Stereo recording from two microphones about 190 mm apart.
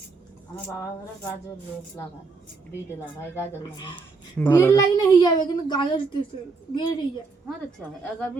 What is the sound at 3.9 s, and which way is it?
A woman's voice, 10° left (ahead or behind).